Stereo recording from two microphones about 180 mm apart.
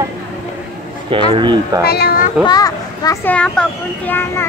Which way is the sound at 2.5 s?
20° left (ahead or behind).